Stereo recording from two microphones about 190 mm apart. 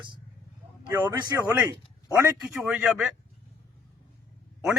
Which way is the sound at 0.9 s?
15° right (ahead or behind).